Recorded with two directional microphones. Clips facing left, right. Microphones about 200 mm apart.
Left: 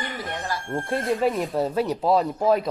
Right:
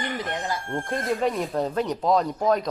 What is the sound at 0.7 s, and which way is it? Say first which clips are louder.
Speech: left 3 dB; 5° left (ahead or behind).